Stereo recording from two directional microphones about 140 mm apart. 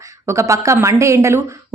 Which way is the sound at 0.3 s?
20° right (ahead or behind).